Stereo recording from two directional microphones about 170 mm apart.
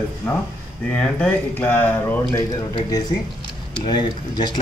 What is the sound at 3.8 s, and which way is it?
Speech, 25° left (ahead or behind).